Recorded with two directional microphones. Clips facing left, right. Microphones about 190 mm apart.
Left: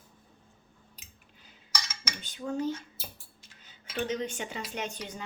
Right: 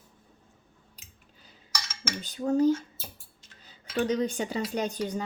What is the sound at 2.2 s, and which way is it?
Speech, 40° right (ahead or behind).